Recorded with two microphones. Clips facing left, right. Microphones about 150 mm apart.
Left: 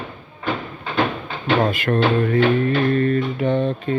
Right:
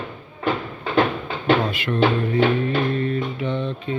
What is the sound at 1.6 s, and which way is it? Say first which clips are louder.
Music: left 2 dB; 50° left (ahead or behind).